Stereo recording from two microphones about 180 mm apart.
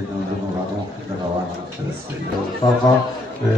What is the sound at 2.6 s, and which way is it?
Speech, 20° left (ahead or behind).